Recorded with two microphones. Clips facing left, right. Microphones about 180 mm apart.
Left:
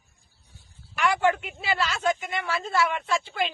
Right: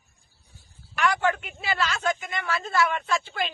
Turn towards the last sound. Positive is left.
turn(degrees=25)  # may be behind; listen again after turning